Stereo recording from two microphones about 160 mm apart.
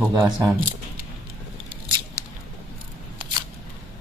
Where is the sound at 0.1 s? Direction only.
20° right (ahead or behind).